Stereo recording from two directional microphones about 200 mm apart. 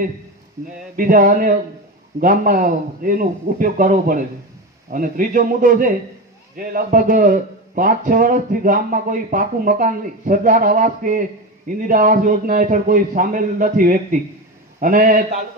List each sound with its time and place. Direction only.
0.9 s a man's voice: 45° right (ahead or behind)